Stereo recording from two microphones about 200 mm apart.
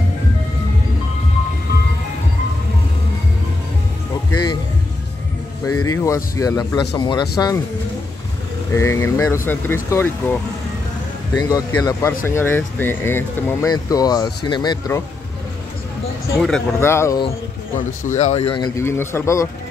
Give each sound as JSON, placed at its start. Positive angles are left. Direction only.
{"t": 5.9, "sound": "speech", "side_deg": 15}
{"t": 8.7, "sound": "speech", "side_deg": 15}
{"t": 11.3, "sound": "speech", "side_deg": 20}
{"t": 16.3, "sound": "speech", "side_deg": 5}
{"t": 17.7, "sound": "speech", "side_deg": 40}
{"t": 18.8, "sound": "speech", "side_deg": 10}